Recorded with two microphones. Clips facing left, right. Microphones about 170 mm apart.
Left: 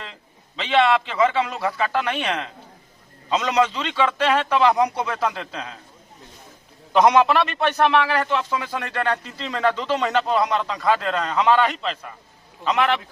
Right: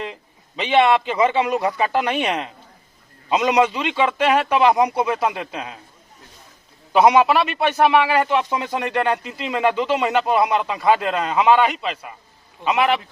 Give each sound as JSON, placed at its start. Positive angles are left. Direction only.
{"t": 0.0, "sound": "a man's voice", "side_deg": -15}
{"t": 6.9, "sound": "a man's voice", "side_deg": -5}